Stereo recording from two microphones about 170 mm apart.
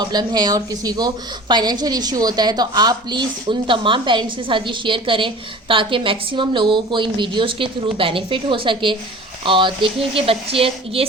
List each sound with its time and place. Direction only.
0.0 s a woman's voice: 25° right (ahead or behind)